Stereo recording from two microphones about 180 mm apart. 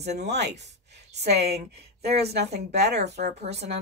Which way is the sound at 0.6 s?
70° right (ahead or behind).